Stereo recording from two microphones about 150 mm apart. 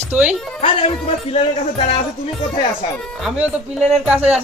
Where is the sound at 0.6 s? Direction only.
40° left (ahead or behind).